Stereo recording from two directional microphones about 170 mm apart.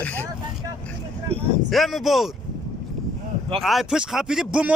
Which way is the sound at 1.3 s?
35° right (ahead or behind).